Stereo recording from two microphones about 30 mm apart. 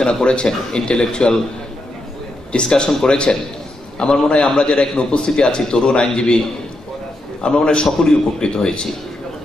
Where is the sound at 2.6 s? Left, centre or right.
Left.